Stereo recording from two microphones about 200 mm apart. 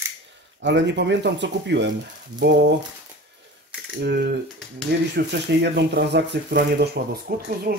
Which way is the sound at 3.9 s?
55° right (ahead or behind).